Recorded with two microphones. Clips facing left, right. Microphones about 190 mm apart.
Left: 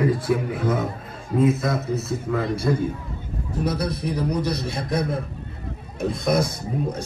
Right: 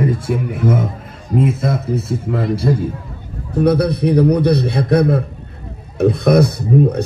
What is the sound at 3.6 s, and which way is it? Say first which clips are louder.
A man's voice: right 11 dB; 65° right (ahead or behind).